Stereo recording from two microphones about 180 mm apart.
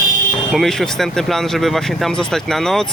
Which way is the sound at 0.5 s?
Centre (ahead or behind).